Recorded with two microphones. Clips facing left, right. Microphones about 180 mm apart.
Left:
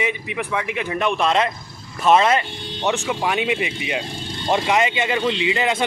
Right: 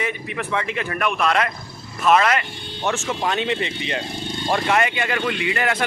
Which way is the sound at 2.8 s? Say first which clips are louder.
Left 1 dB; 15° left (ahead or behind).